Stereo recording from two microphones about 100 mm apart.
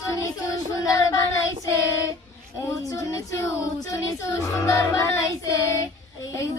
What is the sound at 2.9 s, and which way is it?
Child singing, 30° left (ahead or behind).